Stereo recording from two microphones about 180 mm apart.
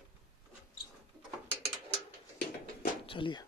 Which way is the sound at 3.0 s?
30° left (ahead or behind).